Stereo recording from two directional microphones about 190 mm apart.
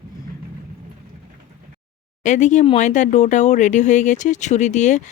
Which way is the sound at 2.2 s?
40° left (ahead or behind).